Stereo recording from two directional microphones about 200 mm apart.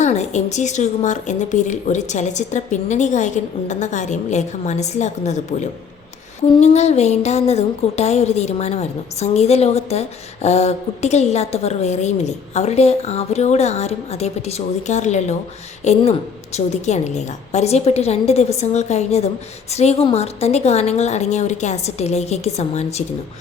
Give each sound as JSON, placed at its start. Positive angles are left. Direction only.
{"t": 0.0, "sound": "speech", "side_deg": 35}